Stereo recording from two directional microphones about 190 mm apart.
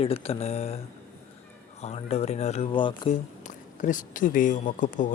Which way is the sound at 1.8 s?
30° left (ahead or behind).